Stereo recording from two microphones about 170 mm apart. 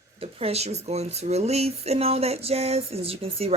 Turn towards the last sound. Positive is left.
turn(degrees=-35)  # may be behind; listen again after turning